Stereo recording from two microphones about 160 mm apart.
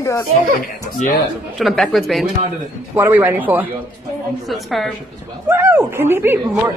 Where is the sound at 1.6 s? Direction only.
Centre (ahead or behind).